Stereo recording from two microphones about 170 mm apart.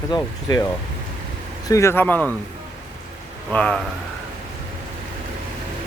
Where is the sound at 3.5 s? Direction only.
5° left (ahead or behind).